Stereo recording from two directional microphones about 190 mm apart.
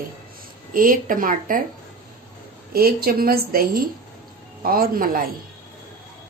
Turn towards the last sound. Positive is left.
turn(degrees=-50)  # may be behind; listen again after turning